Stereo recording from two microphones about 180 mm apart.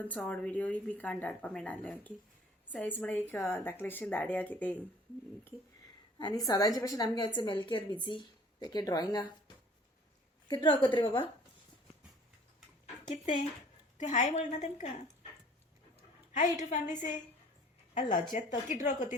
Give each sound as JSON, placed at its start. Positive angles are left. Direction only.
{"t": 0.0, "sound": "a woman's voice", "side_deg": 10}
{"t": 6.1, "sound": "a woman's voice", "side_deg": 20}
{"t": 10.5, "sound": "a woman's voice", "side_deg": 25}
{"t": 12.8, "sound": "a sound", "side_deg": 45}
{"t": 14.0, "sound": "a woman's voice", "side_deg": 40}
{"t": 16.6, "sound": "a woman's voice", "side_deg": 40}